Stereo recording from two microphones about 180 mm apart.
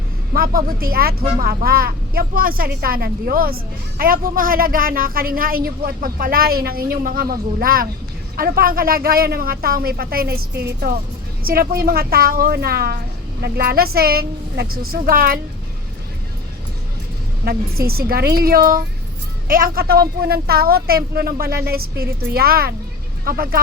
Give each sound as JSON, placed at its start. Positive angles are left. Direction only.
{"t": 0.3, "sound": "speech", "side_deg": -55}
{"t": 17.4, "sound": "speech", "side_deg": -60}